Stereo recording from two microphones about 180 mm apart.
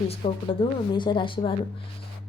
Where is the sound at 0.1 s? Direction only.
30° left (ahead or behind).